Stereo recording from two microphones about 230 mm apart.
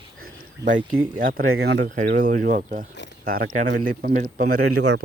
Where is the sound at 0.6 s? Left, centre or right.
Right.